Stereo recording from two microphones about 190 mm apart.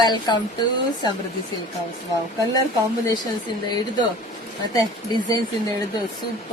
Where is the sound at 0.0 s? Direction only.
20° left (ahead or behind).